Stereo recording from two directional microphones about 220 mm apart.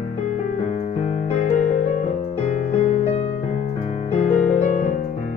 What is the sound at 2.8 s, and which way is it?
Music, 35° left (ahead or behind).